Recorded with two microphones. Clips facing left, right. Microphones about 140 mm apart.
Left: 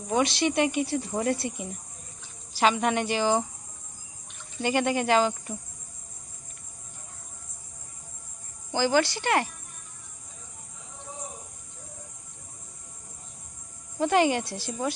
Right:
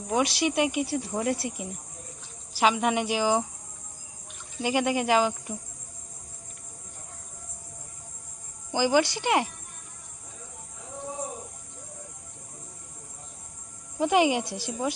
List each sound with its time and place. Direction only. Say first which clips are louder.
0.1 s speech: left 1 dB; 10° right (ahead or behind)
4.6 s speech: even; 5° right (ahead or behind)
8.7 s speech: right 1 dB; 15° right (ahead or behind)
14.0 s speech: even; 10° right (ahead or behind)